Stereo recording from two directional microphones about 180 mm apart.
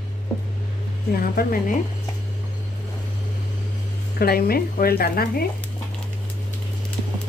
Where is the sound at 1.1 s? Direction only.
55° left (ahead or behind).